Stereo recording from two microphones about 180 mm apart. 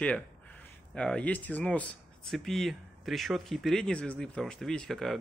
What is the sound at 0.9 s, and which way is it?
Speech, 5° left (ahead or behind).